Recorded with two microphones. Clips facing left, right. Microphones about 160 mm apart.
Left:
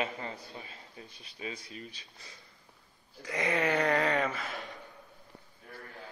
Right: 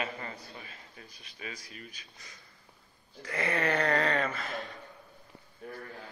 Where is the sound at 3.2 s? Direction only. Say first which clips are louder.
Left 1 dB; 15° left (ahead or behind).